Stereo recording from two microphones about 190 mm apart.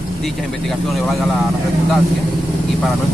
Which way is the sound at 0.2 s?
Centre (ahead or behind).